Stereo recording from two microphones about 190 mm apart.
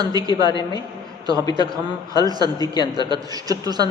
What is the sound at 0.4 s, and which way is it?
A woman's voice, 25° left (ahead or behind).